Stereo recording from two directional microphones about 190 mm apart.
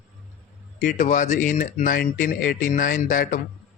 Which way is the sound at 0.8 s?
40° left (ahead or behind).